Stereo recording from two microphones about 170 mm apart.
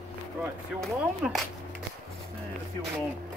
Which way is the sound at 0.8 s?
Centre (ahead or behind).